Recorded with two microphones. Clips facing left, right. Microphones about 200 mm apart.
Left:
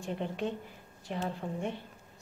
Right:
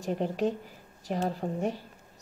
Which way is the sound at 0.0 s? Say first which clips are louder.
Right 6 dB; 40° right (ahead or behind).